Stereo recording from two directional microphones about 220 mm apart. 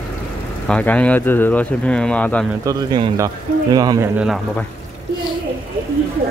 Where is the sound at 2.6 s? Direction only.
15° right (ahead or behind).